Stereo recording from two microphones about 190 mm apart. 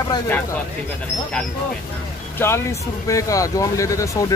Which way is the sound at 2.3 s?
15° left (ahead or behind).